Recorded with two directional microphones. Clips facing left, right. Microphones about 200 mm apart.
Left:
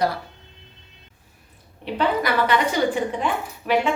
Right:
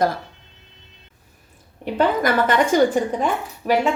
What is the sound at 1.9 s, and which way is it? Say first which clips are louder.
A woman's voice: right 3 dB; 45° right (ahead or behind).